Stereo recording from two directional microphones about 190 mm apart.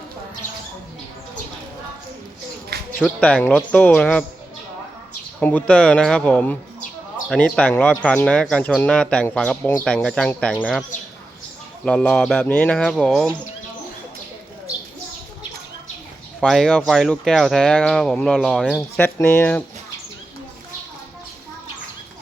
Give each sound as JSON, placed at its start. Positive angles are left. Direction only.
{"t": 2.7, "sound": "a sound", "side_deg": -55}
{"t": 3.2, "sound": "speech", "side_deg": 5}
{"t": 5.4, "sound": "a man's voice", "side_deg": 10}
{"t": 11.9, "sound": "a man's voice", "side_deg": 5}
{"t": 16.4, "sound": "a man's voice", "side_deg": 5}
{"t": 18.9, "sound": "speech", "side_deg": 10}